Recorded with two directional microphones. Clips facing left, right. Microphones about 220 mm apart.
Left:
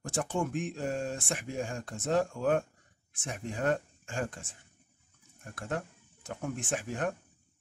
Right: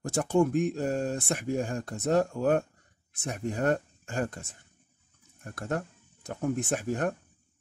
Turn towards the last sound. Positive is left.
turn(degrees=-40)  # may be behind; listen again after turning